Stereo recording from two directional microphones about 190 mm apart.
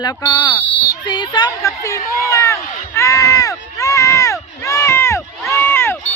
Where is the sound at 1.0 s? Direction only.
25° left (ahead or behind).